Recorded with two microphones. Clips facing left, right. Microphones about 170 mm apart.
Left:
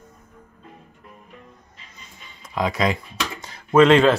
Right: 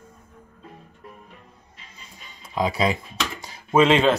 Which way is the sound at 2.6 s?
25° right (ahead or behind).